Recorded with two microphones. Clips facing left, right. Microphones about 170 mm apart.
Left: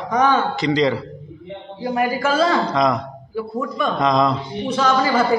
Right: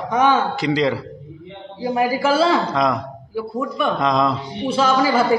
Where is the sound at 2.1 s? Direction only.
10° right (ahead or behind).